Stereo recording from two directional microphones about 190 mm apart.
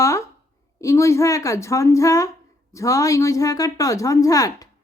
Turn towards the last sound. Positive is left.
turn(degrees=20)  # may be behind; listen again after turning